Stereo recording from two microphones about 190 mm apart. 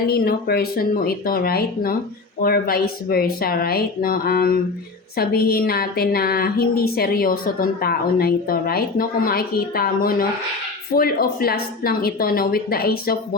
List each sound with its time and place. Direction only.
0.1 s a woman's voice: 55° left (ahead or behind)